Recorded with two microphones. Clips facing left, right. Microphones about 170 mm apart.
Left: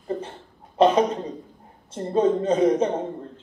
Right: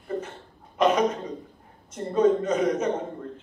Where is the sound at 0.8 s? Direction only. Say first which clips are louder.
Left 3 dB; 30° left (ahead or behind).